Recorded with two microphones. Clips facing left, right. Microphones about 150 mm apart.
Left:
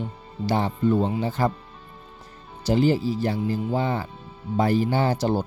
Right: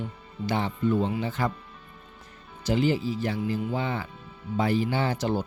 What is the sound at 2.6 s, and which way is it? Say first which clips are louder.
Speech: left 4 dB; 35° left (ahead or behind).